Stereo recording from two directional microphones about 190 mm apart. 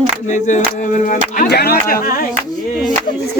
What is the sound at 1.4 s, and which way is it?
Music, 55° left (ahead or behind).